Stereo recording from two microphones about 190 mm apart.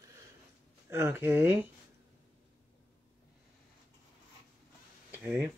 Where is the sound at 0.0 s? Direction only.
15° right (ahead or behind).